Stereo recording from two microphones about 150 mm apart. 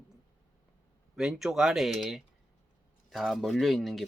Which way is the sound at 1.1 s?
5° right (ahead or behind).